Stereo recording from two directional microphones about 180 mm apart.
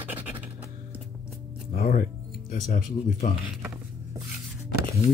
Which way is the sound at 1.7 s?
55° left (ahead or behind).